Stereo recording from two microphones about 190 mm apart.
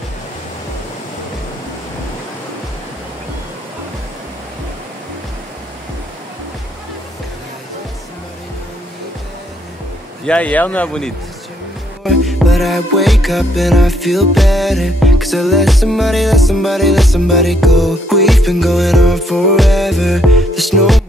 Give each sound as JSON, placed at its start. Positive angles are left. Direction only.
{"t": 10.2, "sound": "speech", "side_deg": 5}
{"t": 12.0, "sound": "music", "side_deg": 0}